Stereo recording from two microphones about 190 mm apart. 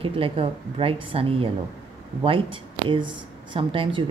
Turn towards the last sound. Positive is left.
turn(degrees=-25)  # may be behind; listen again after turning